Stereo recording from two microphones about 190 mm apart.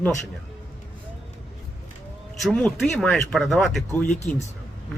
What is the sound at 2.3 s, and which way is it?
Speech, 5° left (ahead or behind).